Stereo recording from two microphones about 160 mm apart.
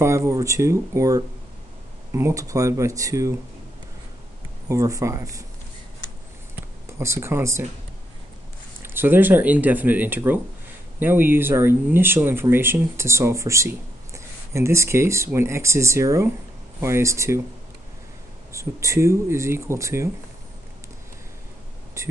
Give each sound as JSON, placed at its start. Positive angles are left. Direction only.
{"t": 0.0, "sound": "speech", "side_deg": -20}
{"t": 4.6, "sound": "speech", "side_deg": -20}
{"t": 7.0, "sound": "speech", "side_deg": -15}
{"t": 8.8, "sound": "speech", "side_deg": -15}
{"t": 18.5, "sound": "speech", "side_deg": -20}
{"t": 22.0, "sound": "a sound", "side_deg": -20}